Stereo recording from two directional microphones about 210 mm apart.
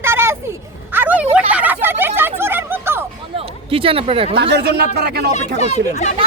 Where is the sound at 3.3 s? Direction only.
25° right (ahead or behind).